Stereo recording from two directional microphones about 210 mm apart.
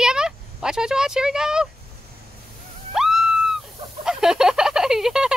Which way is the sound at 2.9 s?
Centre (ahead or behind).